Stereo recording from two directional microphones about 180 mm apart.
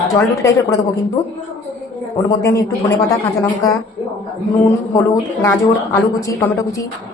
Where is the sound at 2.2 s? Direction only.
15° left (ahead or behind).